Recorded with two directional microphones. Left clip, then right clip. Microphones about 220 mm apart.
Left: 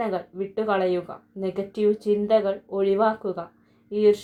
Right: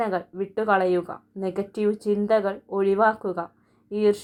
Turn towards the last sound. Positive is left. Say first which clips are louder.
# left 2 dB
turn(degrees=-35)  # may be behind; listen again after turning